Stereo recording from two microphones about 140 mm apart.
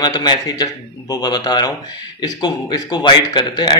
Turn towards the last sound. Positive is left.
turn(degrees=30)  # may be behind; listen again after turning